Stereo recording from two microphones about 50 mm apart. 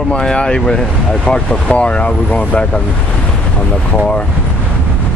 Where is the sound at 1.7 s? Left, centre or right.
Left.